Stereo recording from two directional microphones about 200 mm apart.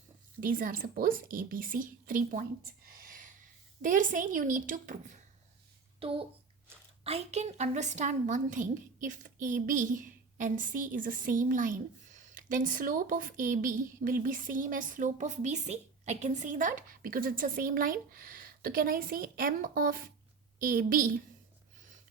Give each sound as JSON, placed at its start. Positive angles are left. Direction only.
{"t": 0.3, "sound": "speech", "side_deg": -45}
{"t": 3.0, "sound": "a sound", "side_deg": -40}
{"t": 3.8, "sound": "a woman's voice", "side_deg": -40}
{"t": 6.0, "sound": "a child's voice", "side_deg": -30}